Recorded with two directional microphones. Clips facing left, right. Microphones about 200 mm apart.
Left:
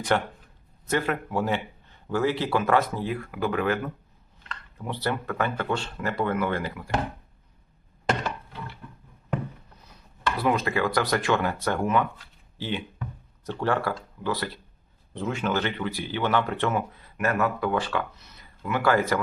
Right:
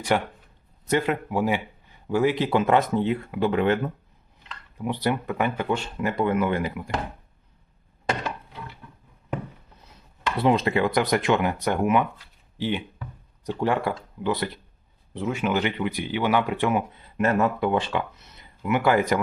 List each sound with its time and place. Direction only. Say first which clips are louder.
0.1 s speech: right 2 dB; 15° right (ahead or behind)
4.4 s speech: right 5 dB; 15° right (ahead or behind)
10.3 s speech: right 4 dB; 25° right (ahead or behind)
15.1 s speech: right 2 dB; 10° right (ahead or behind)